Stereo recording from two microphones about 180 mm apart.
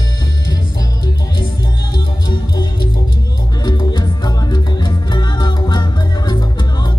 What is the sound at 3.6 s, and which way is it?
Music, 25° left (ahead or behind).